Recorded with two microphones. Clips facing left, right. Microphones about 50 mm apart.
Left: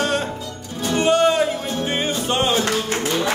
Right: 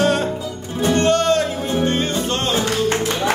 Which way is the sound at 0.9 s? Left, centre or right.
Centre.